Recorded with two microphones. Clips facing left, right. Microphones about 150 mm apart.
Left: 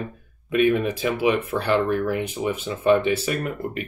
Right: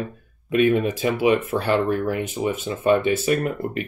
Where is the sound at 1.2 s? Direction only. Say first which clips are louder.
Right 2 dB; 45° right (ahead or behind).